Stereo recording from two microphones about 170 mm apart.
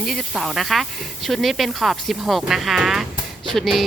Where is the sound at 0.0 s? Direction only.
Centre (ahead or behind).